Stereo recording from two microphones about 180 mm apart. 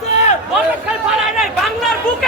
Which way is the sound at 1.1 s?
5° right (ahead or behind).